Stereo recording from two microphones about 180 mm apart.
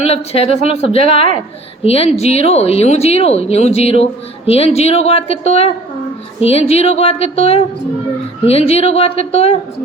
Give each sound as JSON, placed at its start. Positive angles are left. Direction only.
{"t": 0.0, "sound": "speech", "side_deg": 35}